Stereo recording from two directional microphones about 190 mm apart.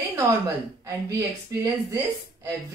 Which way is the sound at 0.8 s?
15° right (ahead or behind).